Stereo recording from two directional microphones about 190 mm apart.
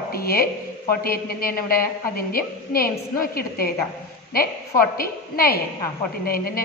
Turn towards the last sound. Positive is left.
turn(degrees=50)  # may be behind; listen again after turning